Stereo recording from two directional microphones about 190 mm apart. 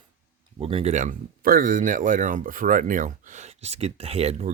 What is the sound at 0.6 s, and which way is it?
Speech, 30° right (ahead or behind).